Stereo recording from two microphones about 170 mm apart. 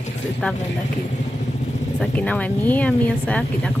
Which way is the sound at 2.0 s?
5° left (ahead or behind).